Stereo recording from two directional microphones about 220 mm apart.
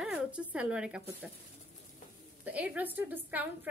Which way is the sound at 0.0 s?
5° right (ahead or behind).